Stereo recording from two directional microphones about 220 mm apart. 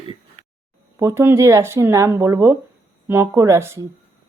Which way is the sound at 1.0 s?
10° right (ahead or behind).